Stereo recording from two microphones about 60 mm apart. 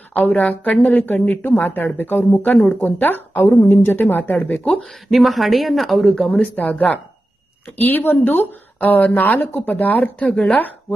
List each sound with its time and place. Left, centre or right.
0.1 s a woman's voice: left
2.5 s speech: centre
2.8 s a woman's voice: left
5.0 s speech: centre
6.3 s speech: left